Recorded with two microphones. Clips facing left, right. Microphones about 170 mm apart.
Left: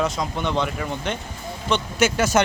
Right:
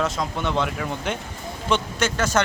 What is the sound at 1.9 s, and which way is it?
Speech, 10° left (ahead or behind).